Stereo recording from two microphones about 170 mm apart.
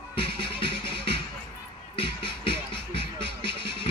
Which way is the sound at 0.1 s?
30° left (ahead or behind).